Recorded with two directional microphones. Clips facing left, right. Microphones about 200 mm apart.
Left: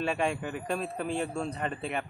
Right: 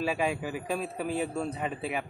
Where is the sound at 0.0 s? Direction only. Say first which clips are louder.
Even; 5° right (ahead or behind).